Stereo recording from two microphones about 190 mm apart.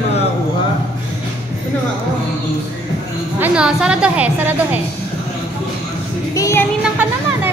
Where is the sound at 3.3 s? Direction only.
5° right (ahead or behind).